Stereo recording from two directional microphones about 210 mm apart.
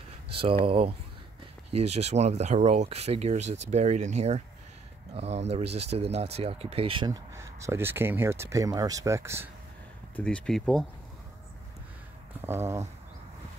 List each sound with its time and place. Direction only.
0.3 s speech: 25° right (ahead or behind)
10.1 s speech: 5° left (ahead or behind)
12.4 s speech: 10° right (ahead or behind)